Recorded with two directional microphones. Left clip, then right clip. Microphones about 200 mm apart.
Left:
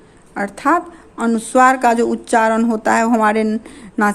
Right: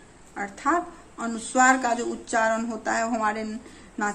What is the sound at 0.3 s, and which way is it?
A woman's voice, 50° left (ahead or behind).